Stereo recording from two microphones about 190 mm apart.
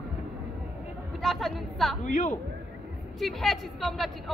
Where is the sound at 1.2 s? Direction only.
Centre (ahead or behind).